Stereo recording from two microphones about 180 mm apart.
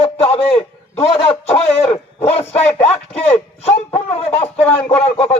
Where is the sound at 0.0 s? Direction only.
30° left (ahead or behind).